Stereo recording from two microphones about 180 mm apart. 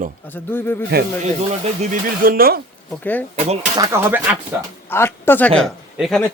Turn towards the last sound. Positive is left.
turn(degrees=0)  # may be behind; listen again after turning